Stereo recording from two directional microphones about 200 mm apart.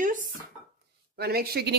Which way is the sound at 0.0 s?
40° right (ahead or behind).